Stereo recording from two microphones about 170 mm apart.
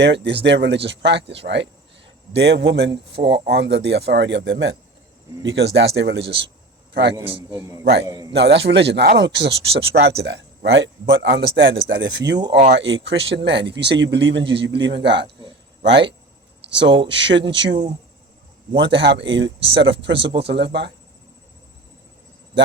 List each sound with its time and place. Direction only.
0.0 s speech: 90° right
8.0 s a man's voice: 20° right (ahead or behind)
8.3 s speech: 90° right
18.8 s speech: 90° right
22.5 s a man's voice: 90° right